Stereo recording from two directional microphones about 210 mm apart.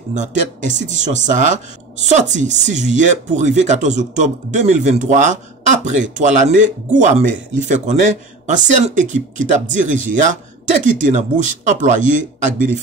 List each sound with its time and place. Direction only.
0.1 s speech: 35° right (ahead or behind)